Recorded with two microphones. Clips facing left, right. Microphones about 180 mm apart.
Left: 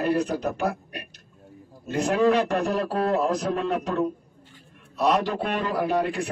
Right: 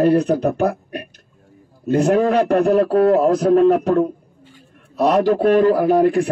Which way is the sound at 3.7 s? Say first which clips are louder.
Right 10 dB; 60° right (ahead or behind).